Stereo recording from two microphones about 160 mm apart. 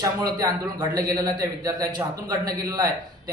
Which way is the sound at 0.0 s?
25° right (ahead or behind).